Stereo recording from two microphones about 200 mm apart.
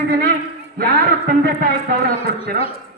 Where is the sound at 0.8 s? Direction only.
50° right (ahead or behind).